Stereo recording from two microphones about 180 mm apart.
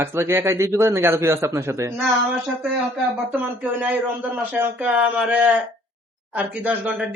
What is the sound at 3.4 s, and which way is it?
Speech, 10° right (ahead or behind).